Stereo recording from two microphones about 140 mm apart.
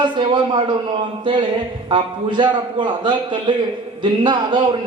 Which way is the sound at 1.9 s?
35° right (ahead or behind).